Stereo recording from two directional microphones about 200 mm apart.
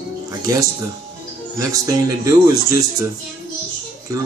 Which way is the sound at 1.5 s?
15° right (ahead or behind).